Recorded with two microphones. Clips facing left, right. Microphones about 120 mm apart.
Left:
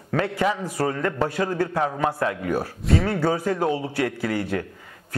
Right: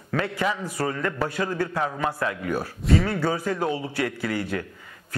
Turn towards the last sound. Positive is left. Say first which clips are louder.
# left 2 dB
turn(degrees=45)  # may be behind; listen again after turning